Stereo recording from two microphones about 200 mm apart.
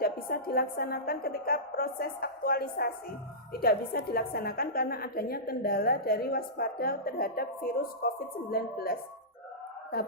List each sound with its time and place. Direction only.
0.0 s a woman's voice: 50° left (ahead or behind)